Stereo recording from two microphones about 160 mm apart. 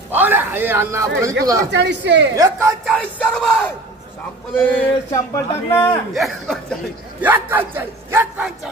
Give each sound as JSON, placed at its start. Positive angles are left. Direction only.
{"t": 0.1, "sound": "speech", "side_deg": -10}
{"t": 1.7, "sound": "a woman's voice", "side_deg": -90}
{"t": 2.3, "sound": "speech", "side_deg": -20}
{"t": 2.8, "sound": "music", "side_deg": 0}
{"t": 4.6, "sound": "speech", "side_deg": 10}
{"t": 6.1, "sound": "music", "side_deg": 0}
{"t": 7.2, "sound": "a man's voice", "side_deg": -10}